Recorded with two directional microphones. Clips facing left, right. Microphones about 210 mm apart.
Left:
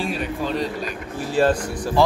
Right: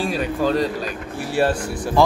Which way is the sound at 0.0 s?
40° right (ahead or behind).